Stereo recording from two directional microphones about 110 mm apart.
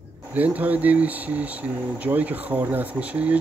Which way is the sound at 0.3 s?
15° right (ahead or behind).